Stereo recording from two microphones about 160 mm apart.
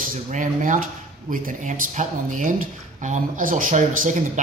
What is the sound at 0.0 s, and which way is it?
Speech, 55° right (ahead or behind).